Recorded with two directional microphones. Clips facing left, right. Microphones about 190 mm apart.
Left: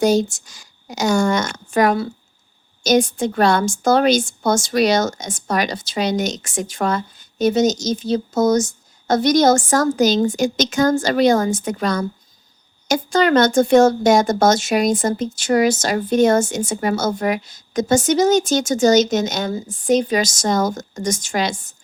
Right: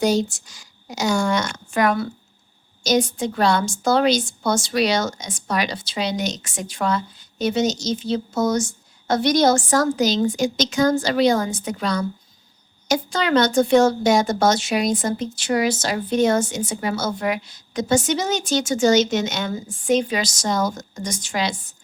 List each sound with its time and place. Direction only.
0.0 s a woman's voice: 45° left (ahead or behind)
2.8 s a woman's voice: 50° left (ahead or behind)